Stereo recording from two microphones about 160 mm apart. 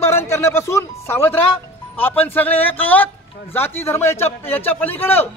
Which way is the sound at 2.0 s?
10° left (ahead or behind).